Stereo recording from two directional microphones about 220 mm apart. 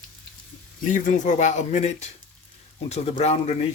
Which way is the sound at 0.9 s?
35° left (ahead or behind).